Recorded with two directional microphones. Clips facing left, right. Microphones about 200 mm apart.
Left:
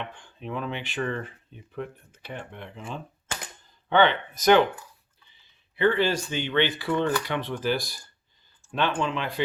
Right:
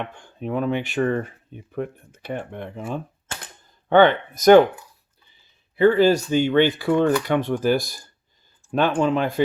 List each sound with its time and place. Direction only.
0.0 s speech: 45° right (ahead or behind)
5.7 s speech: 40° right (ahead or behind)